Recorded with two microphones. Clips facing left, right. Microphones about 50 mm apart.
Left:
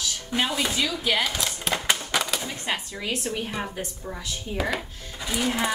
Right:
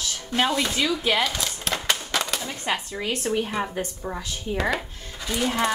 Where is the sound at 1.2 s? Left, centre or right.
Centre.